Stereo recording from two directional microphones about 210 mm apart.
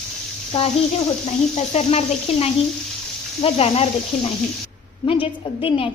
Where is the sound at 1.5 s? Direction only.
30° left (ahead or behind).